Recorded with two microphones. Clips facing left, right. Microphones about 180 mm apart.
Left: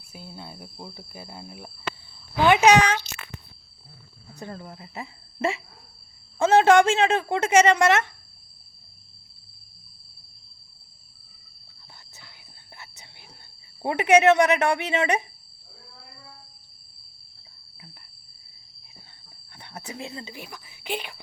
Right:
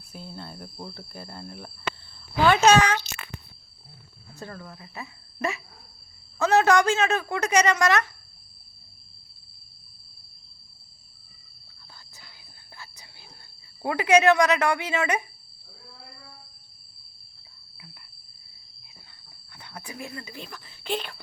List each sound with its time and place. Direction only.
0.1 s cricket: 10° left (ahead or behind)
4.4 s a woman's voice: 20° left (ahead or behind)
12.7 s a sound: 20° left (ahead or behind)
13.8 s a woman's voice: 25° left (ahead or behind)
19.5 s a sound: 30° left (ahead or behind)
20.4 s cricket: 15° left (ahead or behind)